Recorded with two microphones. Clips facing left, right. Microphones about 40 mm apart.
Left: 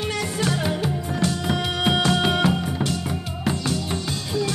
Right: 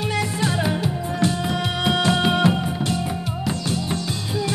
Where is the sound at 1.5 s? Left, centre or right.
Centre.